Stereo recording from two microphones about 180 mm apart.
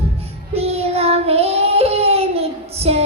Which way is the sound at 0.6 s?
35° right (ahead or behind).